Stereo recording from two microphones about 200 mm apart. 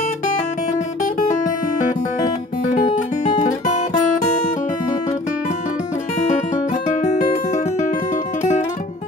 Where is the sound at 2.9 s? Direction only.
35° left (ahead or behind).